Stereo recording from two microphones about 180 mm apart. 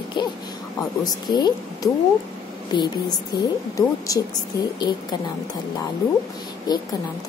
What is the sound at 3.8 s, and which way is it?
Speech, 20° left (ahead or behind).